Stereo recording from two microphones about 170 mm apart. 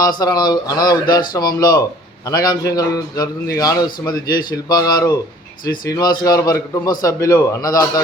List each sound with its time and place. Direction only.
0.0 s speech: 25° left (ahead or behind)